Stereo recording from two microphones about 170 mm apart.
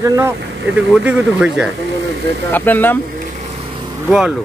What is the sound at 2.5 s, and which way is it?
Speech, 10° left (ahead or behind).